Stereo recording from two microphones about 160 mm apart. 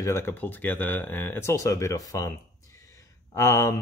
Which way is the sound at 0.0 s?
15° left (ahead or behind).